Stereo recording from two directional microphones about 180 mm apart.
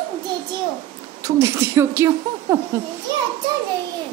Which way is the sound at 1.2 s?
15° right (ahead or behind).